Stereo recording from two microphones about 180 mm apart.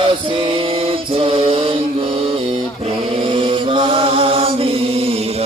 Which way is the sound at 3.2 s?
30° right (ahead or behind).